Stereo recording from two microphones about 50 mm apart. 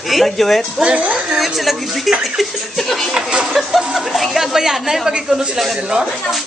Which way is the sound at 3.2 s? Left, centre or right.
Centre.